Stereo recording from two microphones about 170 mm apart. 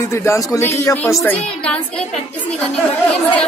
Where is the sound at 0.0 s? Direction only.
15° left (ahead or behind).